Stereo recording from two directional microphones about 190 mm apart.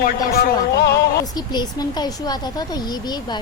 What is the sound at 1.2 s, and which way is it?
Speech, 20° left (ahead or behind).